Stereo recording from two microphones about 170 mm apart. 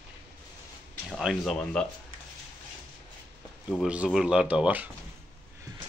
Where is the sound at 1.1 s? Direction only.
Centre (ahead or behind).